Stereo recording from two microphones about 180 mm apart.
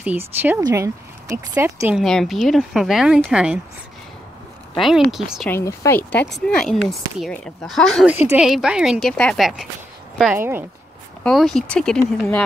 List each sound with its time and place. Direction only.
0.0 s speech: 10° right (ahead or behind)
0.6 s speech: 20° right (ahead or behind)
2.0 s speech: centre (ahead or behind)
4.7 s speech: centre (ahead or behind)
5.5 s speech: 15° left (ahead or behind); by 8.2 s centre (ahead or behind)
8.2 s speech: 10° right (ahead or behind); by 9.5 s 5° left (ahead or behind)
10.3 s speech: 10° right (ahead or behind)
11.2 s speech: centre (ahead or behind)